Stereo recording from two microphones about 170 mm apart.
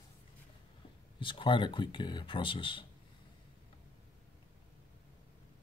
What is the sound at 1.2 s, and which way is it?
Speech, 30° left (ahead or behind).